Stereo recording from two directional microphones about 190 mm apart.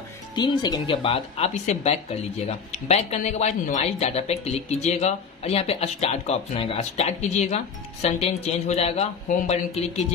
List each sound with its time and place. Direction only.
0.4 s speech: 25° left (ahead or behind)